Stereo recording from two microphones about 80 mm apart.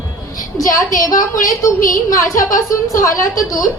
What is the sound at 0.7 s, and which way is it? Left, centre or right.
A woman's voice, left.